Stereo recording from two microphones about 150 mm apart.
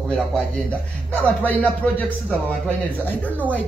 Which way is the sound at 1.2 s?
10° left (ahead or behind).